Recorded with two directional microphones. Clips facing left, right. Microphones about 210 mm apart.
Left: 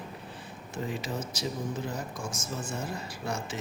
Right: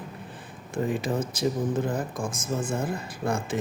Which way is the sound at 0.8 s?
55° right (ahead or behind).